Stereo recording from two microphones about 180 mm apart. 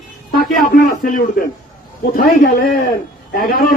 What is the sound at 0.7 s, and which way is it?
A man's voice, 50° left (ahead or behind).